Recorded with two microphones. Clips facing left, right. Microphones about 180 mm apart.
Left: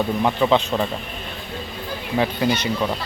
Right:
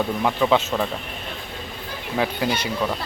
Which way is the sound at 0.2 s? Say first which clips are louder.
Left 1 dB; centre (ahead or behind).